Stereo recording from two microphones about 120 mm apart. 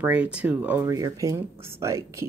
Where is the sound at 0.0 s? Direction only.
10° right (ahead or behind).